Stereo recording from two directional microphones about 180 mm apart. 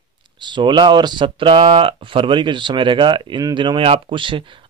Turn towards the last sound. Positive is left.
turn(degrees=-30)  # may be behind; listen again after turning